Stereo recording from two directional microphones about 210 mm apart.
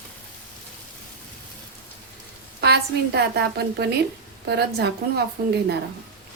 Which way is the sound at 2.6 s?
55° right (ahead or behind).